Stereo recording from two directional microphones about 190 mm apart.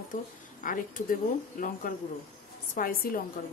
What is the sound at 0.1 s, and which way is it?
Speech, 45° left (ahead or behind).